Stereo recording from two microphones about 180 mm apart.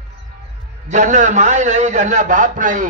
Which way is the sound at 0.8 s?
45° right (ahead or behind).